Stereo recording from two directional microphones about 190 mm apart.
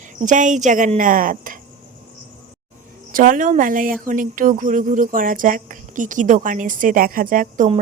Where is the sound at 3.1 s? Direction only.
45° right (ahead or behind).